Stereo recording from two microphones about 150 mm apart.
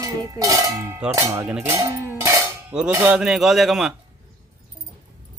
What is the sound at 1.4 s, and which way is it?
Dishes, 10° right (ahead or behind).